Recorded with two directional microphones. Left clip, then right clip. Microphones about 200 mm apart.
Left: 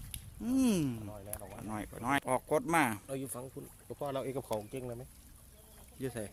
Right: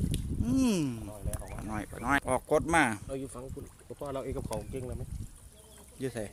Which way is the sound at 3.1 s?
55° left (ahead or behind).